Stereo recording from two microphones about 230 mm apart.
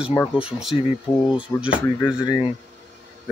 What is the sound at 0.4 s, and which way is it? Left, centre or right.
Speech, centre.